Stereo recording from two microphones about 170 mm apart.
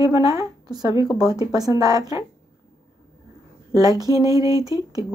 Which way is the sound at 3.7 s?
20° right (ahead or behind).